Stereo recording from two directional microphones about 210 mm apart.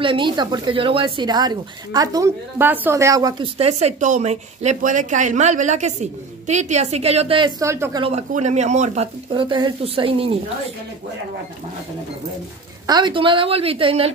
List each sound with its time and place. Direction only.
0.0 s speech: 25° right (ahead or behind)
3.5 s a woman's voice: 30° right (ahead or behind); by 8.0 s 15° right (ahead or behind)
8.0 s speech: 30° right (ahead or behind)
12.8 s speech: 20° right (ahead or behind)